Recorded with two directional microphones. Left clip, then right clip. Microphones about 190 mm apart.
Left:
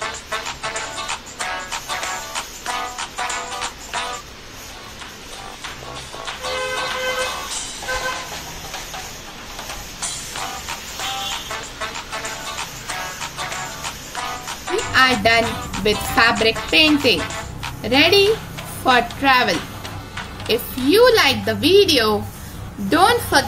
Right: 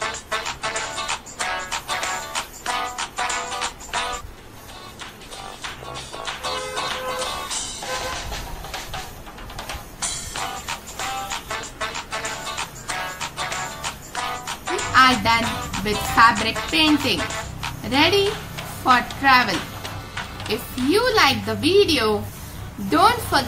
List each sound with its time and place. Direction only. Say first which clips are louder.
0.0 s music: even; centre (ahead or behind)
6.1 s music: left 2 dB; centre (ahead or behind)
22.8 s a woman's voice: left 2 dB; 5° left (ahead or behind)